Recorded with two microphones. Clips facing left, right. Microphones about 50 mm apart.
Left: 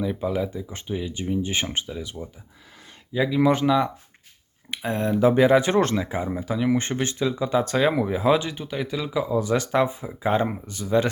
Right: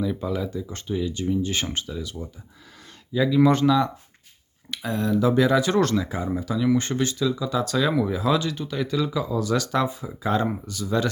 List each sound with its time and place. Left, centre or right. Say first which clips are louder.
0.0 s speech: left 1 dB; centre
4.7 s speech: even; left